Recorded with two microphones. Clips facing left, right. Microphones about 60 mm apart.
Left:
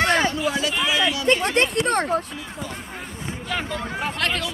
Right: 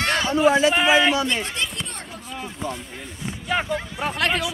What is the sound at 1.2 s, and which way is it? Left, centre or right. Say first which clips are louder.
Speech: left 6 dB; left.